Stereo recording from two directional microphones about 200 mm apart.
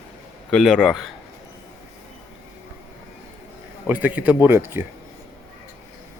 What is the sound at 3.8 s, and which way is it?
Speech, 10° right (ahead or behind).